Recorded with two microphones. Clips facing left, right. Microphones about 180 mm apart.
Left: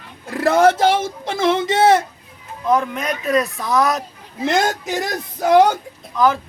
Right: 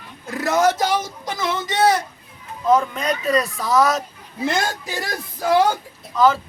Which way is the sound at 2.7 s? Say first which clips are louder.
Even; centre (ahead or behind).